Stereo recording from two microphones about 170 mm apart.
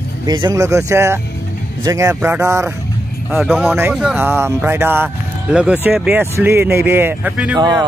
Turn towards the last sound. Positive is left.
turn(degrees=-10)  # may be behind; listen again after turning